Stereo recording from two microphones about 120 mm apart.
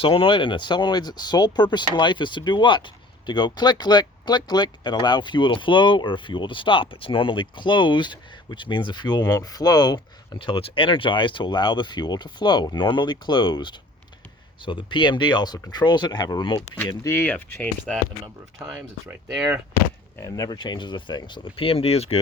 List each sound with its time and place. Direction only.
0.0 s speech: 50° left (ahead or behind)
17.1 s speech: 15° left (ahead or behind)
18.7 s speech: 5° right (ahead or behind)
19.7 s speech: 25° left (ahead or behind); by 22.2 s 60° left (ahead or behind)